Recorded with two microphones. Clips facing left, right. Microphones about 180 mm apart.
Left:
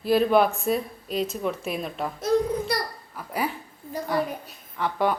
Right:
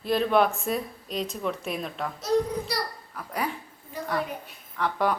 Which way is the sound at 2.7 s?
50° left (ahead or behind).